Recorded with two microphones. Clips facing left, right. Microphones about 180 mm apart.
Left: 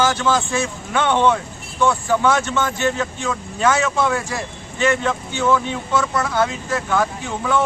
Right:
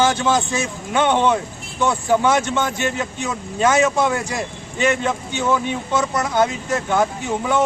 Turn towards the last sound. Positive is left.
turn(degrees=-20)  # may be behind; listen again after turning